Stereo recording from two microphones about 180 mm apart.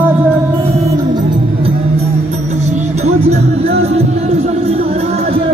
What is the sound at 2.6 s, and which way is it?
Music, 40° right (ahead or behind).